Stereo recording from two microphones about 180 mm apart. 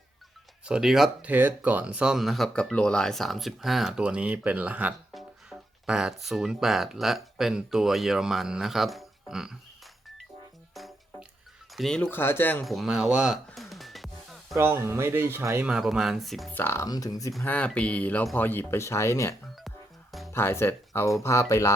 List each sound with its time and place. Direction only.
0.6 s speech: 5° right (ahead or behind)
10.8 s music: centre (ahead or behind)
11.7 s speech: centre (ahead or behind)
12.0 s speech: 15° left (ahead or behind)
12.6 s music: centre (ahead or behind)
14.5 s speech: 15° right (ahead or behind)
16.6 s speech: 15° left (ahead or behind)
17.3 s speech: 10° left (ahead or behind)
19.6 s music: centre (ahead or behind)
20.3 s speech: 15° left (ahead or behind)